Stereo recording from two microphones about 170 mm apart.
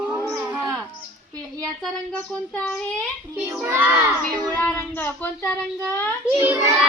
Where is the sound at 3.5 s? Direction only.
15° right (ahead or behind).